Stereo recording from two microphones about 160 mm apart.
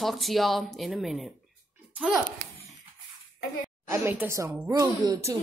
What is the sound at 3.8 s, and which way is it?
A woman's voice, 15° right (ahead or behind).